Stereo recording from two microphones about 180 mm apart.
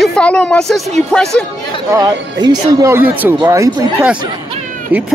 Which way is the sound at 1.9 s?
20° right (ahead or behind).